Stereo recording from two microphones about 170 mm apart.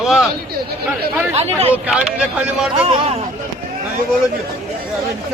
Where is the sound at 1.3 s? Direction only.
40° right (ahead or behind).